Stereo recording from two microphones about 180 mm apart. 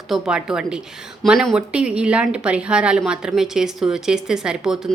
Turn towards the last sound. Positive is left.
turn(degrees=-5)  # may be behind; listen again after turning